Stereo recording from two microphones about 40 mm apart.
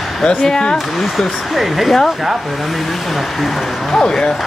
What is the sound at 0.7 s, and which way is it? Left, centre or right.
Speech, centre.